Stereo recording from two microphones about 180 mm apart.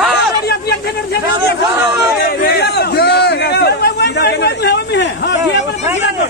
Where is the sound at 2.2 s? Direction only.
60° left (ahead or behind).